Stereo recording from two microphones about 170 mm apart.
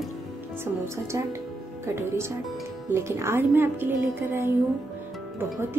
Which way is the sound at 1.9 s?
15° right (ahead or behind).